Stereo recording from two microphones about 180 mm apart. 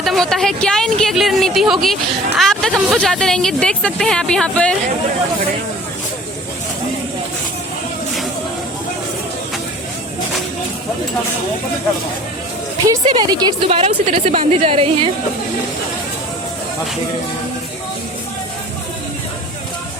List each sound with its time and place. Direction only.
0.0 s speech: centre (ahead or behind)
12.9 s a woman's voice: 20° right (ahead or behind)